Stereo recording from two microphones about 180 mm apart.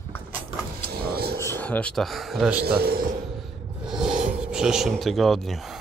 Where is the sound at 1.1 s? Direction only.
60° right (ahead or behind).